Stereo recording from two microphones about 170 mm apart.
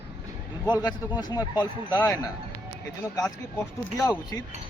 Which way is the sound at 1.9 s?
10° left (ahead or behind).